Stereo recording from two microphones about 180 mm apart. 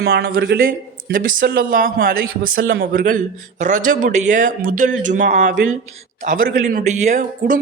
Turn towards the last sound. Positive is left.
turn(degrees=-40)  # may be behind; listen again after turning